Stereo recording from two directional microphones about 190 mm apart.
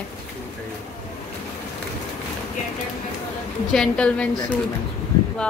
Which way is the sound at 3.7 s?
5° left (ahead or behind).